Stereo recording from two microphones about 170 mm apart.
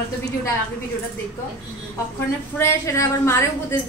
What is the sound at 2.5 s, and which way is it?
Speech, 15° left (ahead or behind).